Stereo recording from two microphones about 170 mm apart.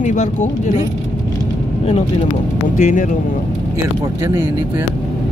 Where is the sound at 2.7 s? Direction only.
45° left (ahead or behind).